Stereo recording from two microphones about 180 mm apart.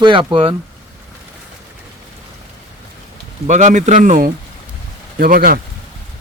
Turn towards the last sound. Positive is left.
turn(degrees=-55)  # may be behind; listen again after turning